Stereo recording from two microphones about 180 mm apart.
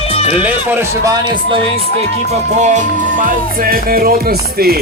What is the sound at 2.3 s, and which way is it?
Music, 40° right (ahead or behind).